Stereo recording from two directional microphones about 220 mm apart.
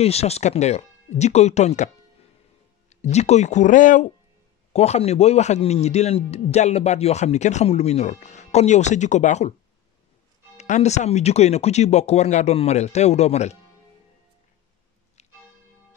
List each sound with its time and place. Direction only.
0.0 s speech: 30° left (ahead or behind)
2.9 s a man's voice: 30° left (ahead or behind)
10.6 s speech: 30° left (ahead or behind)